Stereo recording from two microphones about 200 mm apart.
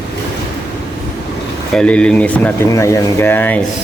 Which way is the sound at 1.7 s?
5° left (ahead or behind).